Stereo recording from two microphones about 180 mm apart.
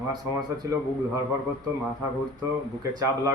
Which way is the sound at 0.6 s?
20° right (ahead or behind).